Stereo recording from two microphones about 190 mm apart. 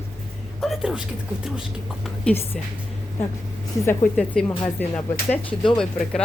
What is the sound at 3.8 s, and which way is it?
Speech, 10° left (ahead or behind).